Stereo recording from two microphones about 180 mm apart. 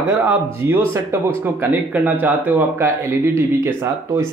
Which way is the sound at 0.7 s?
15° right (ahead or behind).